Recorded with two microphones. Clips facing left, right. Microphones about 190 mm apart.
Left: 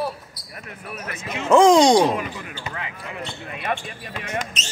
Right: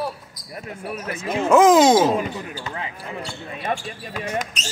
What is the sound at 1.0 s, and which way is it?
Speech, 30° right (ahead or behind).